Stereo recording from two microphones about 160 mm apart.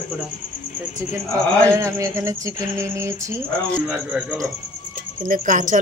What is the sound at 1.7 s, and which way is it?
Speech, 20° right (ahead or behind).